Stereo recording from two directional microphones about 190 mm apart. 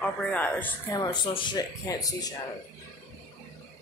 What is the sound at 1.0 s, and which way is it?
Speech, 25° left (ahead or behind).